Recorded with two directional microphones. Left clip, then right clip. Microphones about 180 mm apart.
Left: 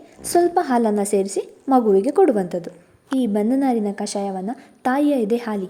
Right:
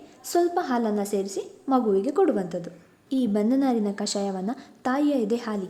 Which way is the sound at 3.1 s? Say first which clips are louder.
Left 4 dB; 15° left (ahead or behind).